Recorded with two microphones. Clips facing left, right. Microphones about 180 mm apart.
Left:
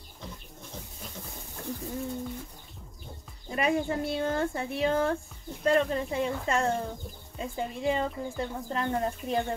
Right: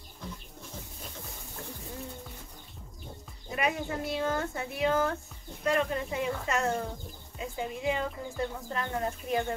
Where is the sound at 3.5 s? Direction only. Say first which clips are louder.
Left 4 dB; 30° left (ahead or behind).